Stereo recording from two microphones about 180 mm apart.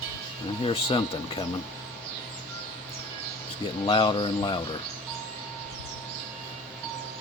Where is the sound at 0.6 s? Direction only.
30° left (ahead or behind).